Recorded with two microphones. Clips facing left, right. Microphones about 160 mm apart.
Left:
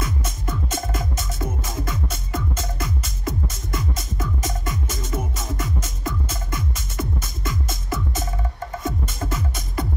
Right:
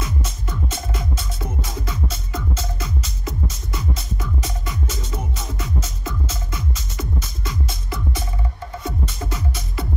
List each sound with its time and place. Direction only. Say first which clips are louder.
0.0 s music: left 1 dB; 50° left (ahead or behind)